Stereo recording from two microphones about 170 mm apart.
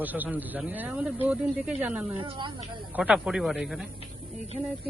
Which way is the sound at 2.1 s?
30° right (ahead or behind).